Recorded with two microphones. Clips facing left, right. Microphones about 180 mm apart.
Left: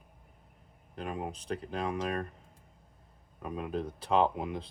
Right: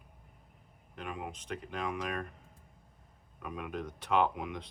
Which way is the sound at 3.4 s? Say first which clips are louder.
Left 4 dB; 30° left (ahead or behind).